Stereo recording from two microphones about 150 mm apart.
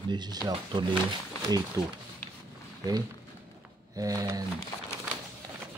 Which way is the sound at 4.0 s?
20° right (ahead or behind).